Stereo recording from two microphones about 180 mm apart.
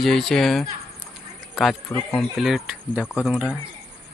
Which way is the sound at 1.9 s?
10° left (ahead or behind).